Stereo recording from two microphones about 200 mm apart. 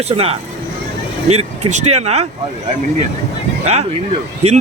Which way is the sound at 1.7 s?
35° right (ahead or behind).